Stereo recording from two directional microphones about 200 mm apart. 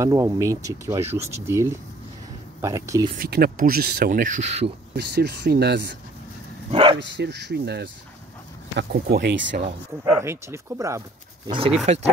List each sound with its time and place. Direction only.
0.0 s speech: 15° right (ahead or behind)
3.2 s speech: 50° right (ahead or behind); by 4.7 s 35° right (ahead or behind)
4.9 s speech: 55° right (ahead or behind)
6.7 s bow-wow: 25° right (ahead or behind)
7.0 s speech: 60° right (ahead or behind)
10.0 s speech: 10° right (ahead or behind)
11.4 s speech: 25° right (ahead or behind)